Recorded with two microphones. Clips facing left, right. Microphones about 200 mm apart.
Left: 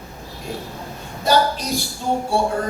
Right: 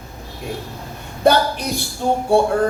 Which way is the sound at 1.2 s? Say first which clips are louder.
Right 3 dB; 60° right (ahead or behind).